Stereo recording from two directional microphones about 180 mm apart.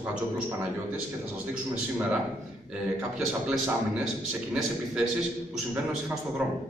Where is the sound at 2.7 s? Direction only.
5° right (ahead or behind).